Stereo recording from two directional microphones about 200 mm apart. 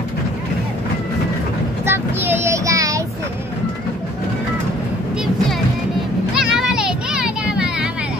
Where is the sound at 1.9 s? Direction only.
10° right (ahead or behind).